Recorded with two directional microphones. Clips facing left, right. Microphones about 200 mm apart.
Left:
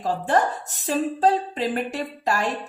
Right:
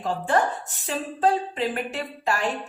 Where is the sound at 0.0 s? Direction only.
40° left (ahead or behind).